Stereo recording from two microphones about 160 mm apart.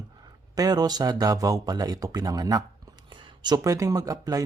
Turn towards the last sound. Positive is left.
turn(degrees=-20)  # may be behind; listen again after turning